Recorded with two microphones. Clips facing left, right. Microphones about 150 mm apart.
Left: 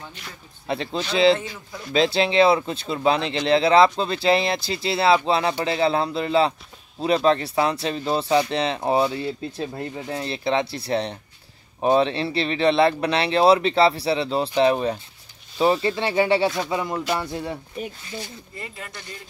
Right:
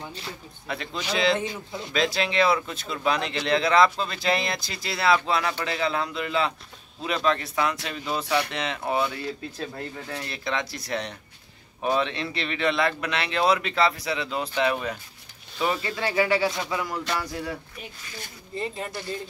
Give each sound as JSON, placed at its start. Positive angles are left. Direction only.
{"t": 0.7, "sound": "speech", "side_deg": 30}
{"t": 1.4, "sound": "speech", "side_deg": -20}
{"t": 1.9, "sound": "speech", "side_deg": 30}
{"t": 17.8, "sound": "speech", "side_deg": 35}